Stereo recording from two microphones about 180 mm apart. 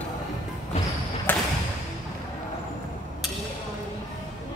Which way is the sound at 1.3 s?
10° left (ahead or behind).